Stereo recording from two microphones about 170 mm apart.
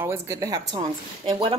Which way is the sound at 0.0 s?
15° right (ahead or behind).